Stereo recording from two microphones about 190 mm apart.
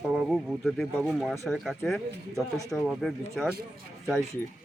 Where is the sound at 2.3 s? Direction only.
15° left (ahead or behind).